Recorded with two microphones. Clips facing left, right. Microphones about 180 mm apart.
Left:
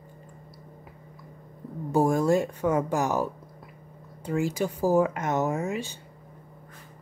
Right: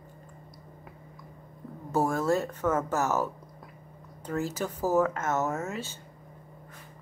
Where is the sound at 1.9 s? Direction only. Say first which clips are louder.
Left 4 dB; 15° left (ahead or behind).